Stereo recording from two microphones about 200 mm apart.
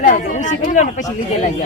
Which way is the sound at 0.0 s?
40° left (ahead or behind).